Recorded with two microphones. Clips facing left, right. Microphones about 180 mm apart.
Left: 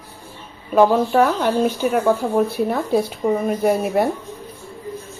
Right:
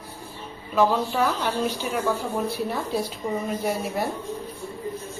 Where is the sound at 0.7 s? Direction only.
50° left (ahead or behind).